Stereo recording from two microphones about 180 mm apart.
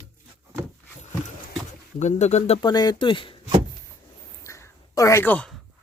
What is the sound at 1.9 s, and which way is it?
Speech, 40° left (ahead or behind).